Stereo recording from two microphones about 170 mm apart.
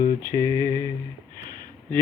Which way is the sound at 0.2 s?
20° right (ahead or behind).